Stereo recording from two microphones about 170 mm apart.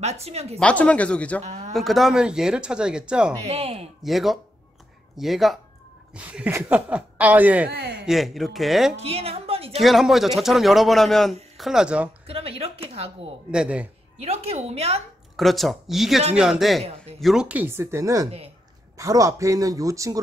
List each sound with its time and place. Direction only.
0.0 s speech: 40° right (ahead or behind)
0.6 s speech: 5° left (ahead or behind)
1.4 s speech: 40° right (ahead or behind)
1.7 s speech: centre (ahead or behind)
3.4 s speech: 35° right (ahead or behind)
4.0 s a woman's voice: centre (ahead or behind)
8.9 s a woman's voice: 35° right (ahead or behind)
9.8 s speech: centre (ahead or behind)
12.3 s speech: 35° right (ahead or behind)
13.5 s speech: 5° right (ahead or behind)
14.2 s speech: 35° right (ahead or behind)
15.3 s a woman's voice: centre (ahead or behind); by 20.2 s 20° right (ahead or behind)